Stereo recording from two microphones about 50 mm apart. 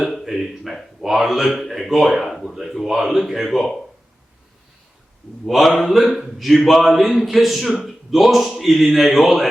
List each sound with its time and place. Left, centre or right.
0.0 s a man's voice: centre
5.5 s a man's voice: centre